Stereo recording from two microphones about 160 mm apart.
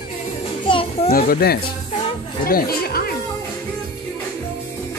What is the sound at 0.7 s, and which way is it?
Children playing, 35° left (ahead or behind).